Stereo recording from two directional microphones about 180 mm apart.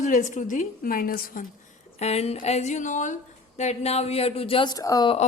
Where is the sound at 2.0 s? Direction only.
35° left (ahead or behind); by 5.1 s 20° left (ahead or behind).